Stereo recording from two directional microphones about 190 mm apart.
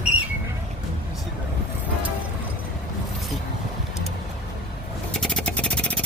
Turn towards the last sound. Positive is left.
turn(degrees=5)  # may be behind; listen again after turning